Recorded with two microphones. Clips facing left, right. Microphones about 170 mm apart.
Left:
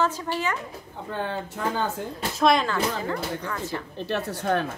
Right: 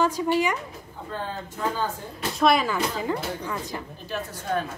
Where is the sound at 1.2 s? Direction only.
70° left (ahead or behind).